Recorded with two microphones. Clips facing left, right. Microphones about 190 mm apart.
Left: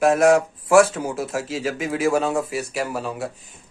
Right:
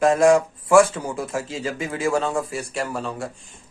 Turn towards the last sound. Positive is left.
turn(degrees=5)  # may be behind; listen again after turning